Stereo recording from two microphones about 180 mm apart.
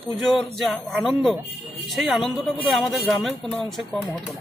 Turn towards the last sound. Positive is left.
turn(degrees=0)  # may be behind; listen again after turning